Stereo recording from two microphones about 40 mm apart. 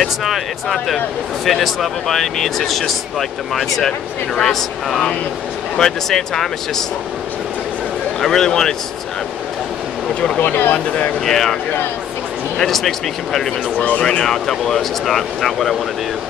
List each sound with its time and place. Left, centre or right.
0.0 s speech: centre
5.8 s speech: centre
8.2 s speech: centre
10.4 s speech: left
11.2 s speech: centre
12.6 s speech: centre
13.7 s speech: left
14.0 s speech: centre